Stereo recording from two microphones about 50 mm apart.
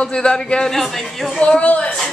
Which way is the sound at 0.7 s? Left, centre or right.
Centre.